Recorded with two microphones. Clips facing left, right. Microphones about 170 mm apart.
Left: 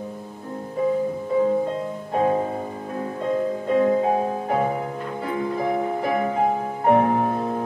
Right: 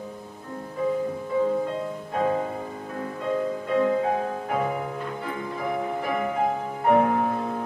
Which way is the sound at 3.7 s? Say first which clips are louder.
Left 4 dB; 25° left (ahead or behind).